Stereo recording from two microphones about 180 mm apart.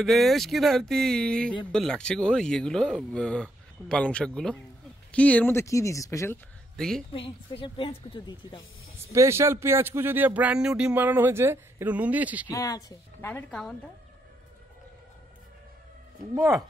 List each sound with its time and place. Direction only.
0.0 s speech: centre (ahead or behind)
6.8 s speech: 5° left (ahead or behind)
7.1 s speech: 30° left (ahead or behind)
9.1 s speech: 15° right (ahead or behind)
12.4 s speech: 20° left (ahead or behind)